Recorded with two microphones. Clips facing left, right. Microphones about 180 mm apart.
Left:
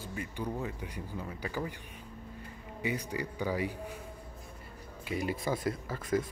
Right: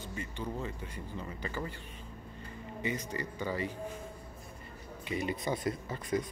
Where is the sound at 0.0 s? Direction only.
10° left (ahead or behind).